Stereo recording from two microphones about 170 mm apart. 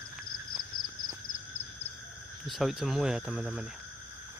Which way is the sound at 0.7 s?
55° left (ahead or behind).